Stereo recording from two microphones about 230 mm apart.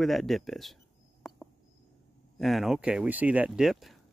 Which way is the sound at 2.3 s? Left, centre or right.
Centre.